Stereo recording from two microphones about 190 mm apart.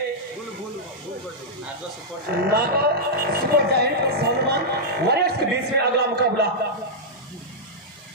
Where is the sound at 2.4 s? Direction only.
55° right (ahead or behind).